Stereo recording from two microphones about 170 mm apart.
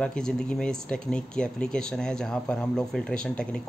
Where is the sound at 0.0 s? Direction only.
5° left (ahead or behind).